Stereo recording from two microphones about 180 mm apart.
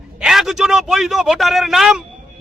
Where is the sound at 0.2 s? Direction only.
Centre (ahead or behind).